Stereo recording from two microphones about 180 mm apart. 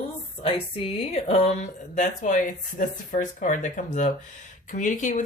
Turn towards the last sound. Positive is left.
turn(degrees=45)  # may be behind; listen again after turning